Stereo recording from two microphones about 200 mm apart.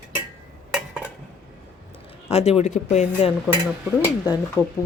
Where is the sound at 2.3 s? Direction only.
30° left (ahead or behind).